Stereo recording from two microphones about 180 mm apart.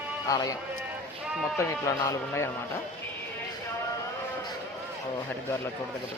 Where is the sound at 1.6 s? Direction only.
15° left (ahead or behind).